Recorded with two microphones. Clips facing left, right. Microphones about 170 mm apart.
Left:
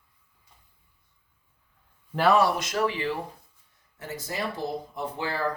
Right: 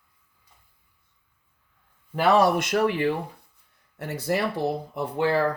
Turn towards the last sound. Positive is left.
turn(degrees=-60)  # may be behind; listen again after turning